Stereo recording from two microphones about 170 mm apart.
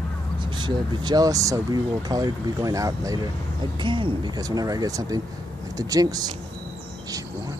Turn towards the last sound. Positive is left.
turn(degrees=-20)  # may be behind; listen again after turning